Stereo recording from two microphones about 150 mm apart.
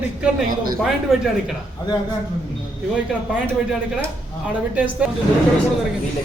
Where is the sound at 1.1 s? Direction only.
5° right (ahead or behind).